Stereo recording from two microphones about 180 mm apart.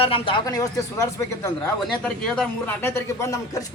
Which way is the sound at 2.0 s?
5° left (ahead or behind).